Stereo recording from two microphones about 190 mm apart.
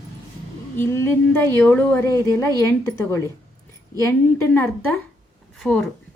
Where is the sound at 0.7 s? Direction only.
10° left (ahead or behind).